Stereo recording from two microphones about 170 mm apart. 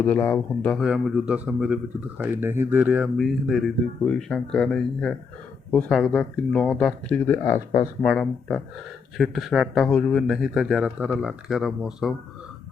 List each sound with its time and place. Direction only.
0.0 s speech: 10° left (ahead or behind)
0.8 s speech: 5° right (ahead or behind); by 7.9 s 20° left (ahead or behind)
8.0 s speech: 5° left (ahead or behind)